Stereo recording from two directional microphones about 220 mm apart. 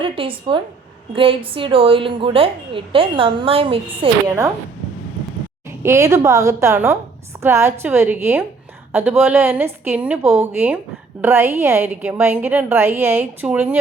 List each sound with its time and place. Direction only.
0.0 s a woman's voice: 25° right (ahead or behind)
5.8 s a woman's voice: 10° right (ahead or behind)